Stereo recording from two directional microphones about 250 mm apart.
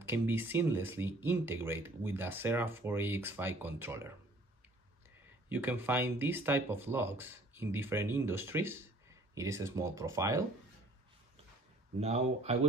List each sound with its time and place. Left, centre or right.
0.0 s speech: centre
5.5 s speech: centre
12.0 s speech: right